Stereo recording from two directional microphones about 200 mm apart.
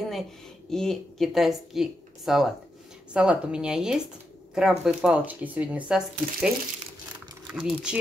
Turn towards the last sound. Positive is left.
turn(degrees=-5)  # may be behind; listen again after turning